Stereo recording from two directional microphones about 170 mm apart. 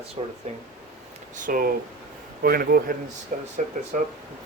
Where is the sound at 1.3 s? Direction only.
55° right (ahead or behind).